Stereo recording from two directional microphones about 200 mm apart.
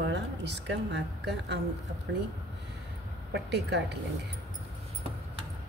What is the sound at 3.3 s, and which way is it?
Speech, 55° right (ahead or behind).